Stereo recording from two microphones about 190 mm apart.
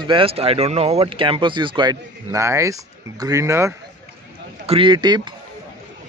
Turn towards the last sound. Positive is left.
turn(degrees=-25)  # may be behind; listen again after turning